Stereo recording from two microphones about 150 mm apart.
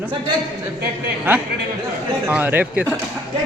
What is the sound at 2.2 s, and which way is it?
Speech, 10° right (ahead or behind).